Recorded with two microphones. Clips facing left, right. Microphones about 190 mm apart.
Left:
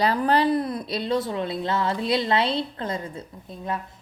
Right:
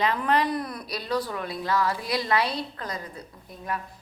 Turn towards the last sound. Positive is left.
turn(degrees=25)  # may be behind; listen again after turning